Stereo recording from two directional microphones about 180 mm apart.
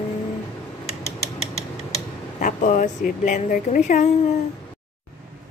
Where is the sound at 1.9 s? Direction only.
45° left (ahead or behind).